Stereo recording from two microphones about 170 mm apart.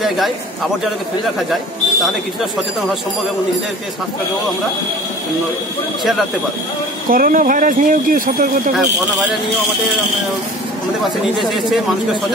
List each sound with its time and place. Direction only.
7.1 s speech: 55° right (ahead or behind)
11.3 s speech: centre (ahead or behind)